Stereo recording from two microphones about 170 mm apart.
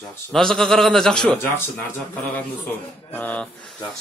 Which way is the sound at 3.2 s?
10° left (ahead or behind).